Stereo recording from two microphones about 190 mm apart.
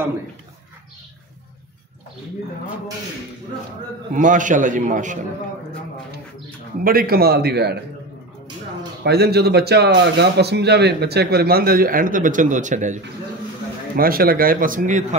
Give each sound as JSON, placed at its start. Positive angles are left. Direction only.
{"t": 4.1, "sound": "a man's voice", "side_deg": -45}
{"t": 6.8, "sound": "speech", "side_deg": -50}
{"t": 9.0, "sound": "a man's voice", "side_deg": -60}